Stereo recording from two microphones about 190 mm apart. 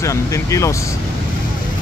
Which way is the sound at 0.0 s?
15° left (ahead or behind).